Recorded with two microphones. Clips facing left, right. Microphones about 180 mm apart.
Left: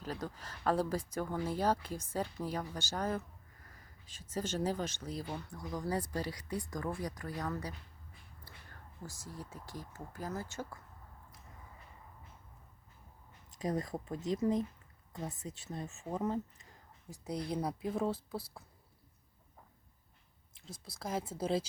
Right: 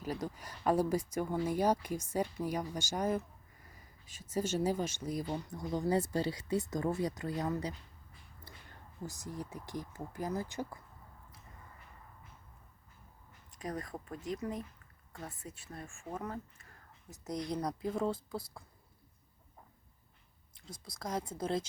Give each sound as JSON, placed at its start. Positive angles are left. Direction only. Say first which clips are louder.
{"t": 0.0, "sound": "speech", "louder": "right 3 dB", "side_deg": -10}
{"t": 9.0, "sound": "speech", "louder": "right 5 dB", "side_deg": -20}
{"t": 13.6, "sound": "speech", "louder": "left 5 dB", "side_deg": 25}
{"t": 17.2, "sound": "speech", "louder": "even", "side_deg": 10}
{"t": 20.8, "sound": "speech", "louder": "even", "side_deg": 5}